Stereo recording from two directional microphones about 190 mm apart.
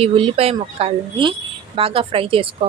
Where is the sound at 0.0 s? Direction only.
30° right (ahead or behind).